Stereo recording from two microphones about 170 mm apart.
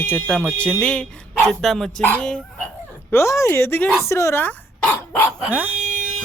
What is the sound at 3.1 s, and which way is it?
Speech, 15° left (ahead or behind).